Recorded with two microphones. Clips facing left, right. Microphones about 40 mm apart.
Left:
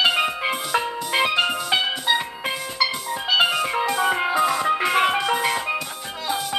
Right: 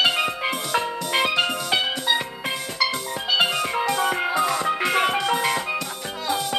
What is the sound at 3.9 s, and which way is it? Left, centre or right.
Music, centre.